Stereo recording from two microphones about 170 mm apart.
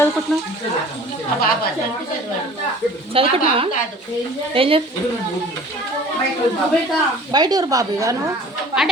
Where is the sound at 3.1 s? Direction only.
35° right (ahead or behind).